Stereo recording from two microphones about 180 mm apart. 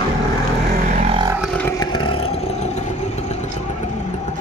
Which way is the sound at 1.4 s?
5° left (ahead or behind).